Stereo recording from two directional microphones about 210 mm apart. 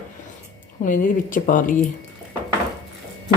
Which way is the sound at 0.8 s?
40° left (ahead or behind).